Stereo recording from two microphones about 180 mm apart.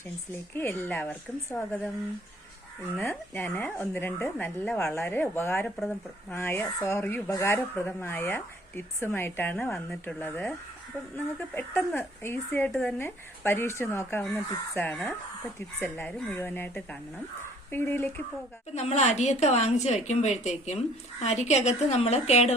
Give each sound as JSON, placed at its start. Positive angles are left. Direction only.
{"t": 0.5, "sound": "speech", "side_deg": 10}
{"t": 3.0, "sound": "speech", "side_deg": 15}
{"t": 18.7, "sound": "a woman's voice", "side_deg": 40}